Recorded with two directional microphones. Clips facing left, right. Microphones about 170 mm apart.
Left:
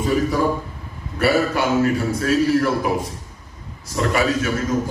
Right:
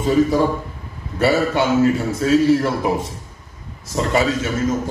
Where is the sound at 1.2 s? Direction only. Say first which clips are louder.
Right 1 dB; 25° right (ahead or behind).